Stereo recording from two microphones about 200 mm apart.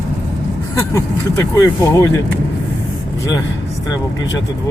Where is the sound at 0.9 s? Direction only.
15° left (ahead or behind).